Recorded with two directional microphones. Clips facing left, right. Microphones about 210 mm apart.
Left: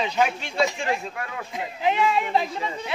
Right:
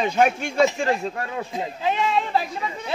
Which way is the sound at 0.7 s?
30° right (ahead or behind).